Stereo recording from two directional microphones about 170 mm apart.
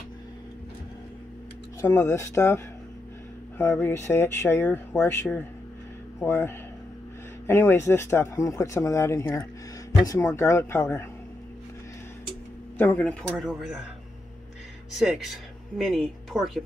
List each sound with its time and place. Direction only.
1.8 s speech: 20° left (ahead or behind)
12.7 s speech: 10° left (ahead or behind)
15.0 s speech: centre (ahead or behind)